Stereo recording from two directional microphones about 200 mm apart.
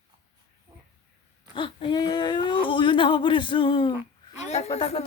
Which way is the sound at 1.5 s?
25° left (ahead or behind).